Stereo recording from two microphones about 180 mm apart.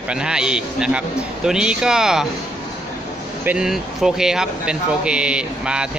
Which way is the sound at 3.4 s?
5° right (ahead or behind).